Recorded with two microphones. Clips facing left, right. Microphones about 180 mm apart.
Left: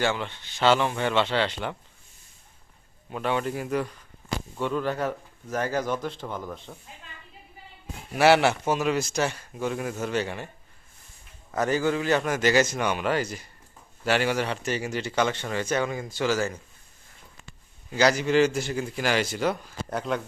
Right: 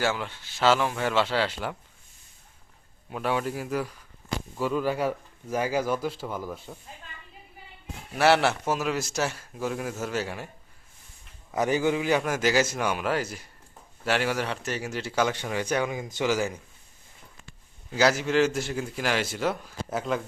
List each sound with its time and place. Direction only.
0.0 s a man's voice: 5° right (ahead or behind)
3.1 s a man's voice: 5° right (ahead or behind)
8.1 s a man's voice: centre (ahead or behind)
11.5 s a man's voice: 15° right (ahead or behind)
17.9 s a man's voice: 5° right (ahead or behind)